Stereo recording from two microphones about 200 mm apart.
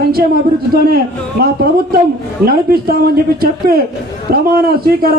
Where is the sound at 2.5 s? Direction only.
50° right (ahead or behind).